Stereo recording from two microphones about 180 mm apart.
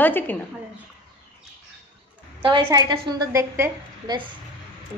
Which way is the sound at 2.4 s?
25° right (ahead or behind).